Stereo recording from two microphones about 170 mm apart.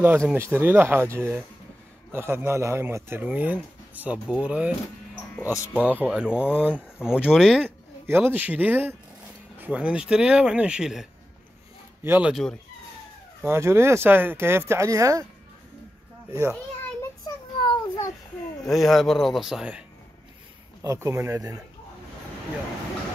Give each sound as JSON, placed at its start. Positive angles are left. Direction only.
{"t": 0.3, "sound": "speech", "side_deg": -15}
{"t": 5.3, "sound": "speech", "side_deg": 15}
{"t": 5.7, "sound": "speech", "side_deg": -5}
{"t": 13.4, "sound": "speech", "side_deg": -15}
{"t": 16.3, "sound": "a child's voice", "side_deg": -15}
{"t": 17.6, "sound": "a sound", "side_deg": 20}
{"t": 18.6, "sound": "speech", "side_deg": 0}
{"t": 20.8, "sound": "speech", "side_deg": -15}